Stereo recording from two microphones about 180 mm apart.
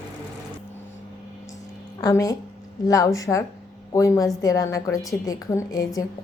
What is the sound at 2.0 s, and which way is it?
A woman's voice, 20° left (ahead or behind).